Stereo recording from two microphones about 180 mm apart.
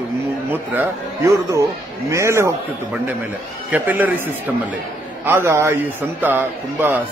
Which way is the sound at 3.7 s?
10° right (ahead or behind).